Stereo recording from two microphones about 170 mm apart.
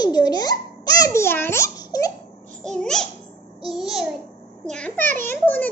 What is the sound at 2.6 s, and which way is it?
Speech, 5° left (ahead or behind).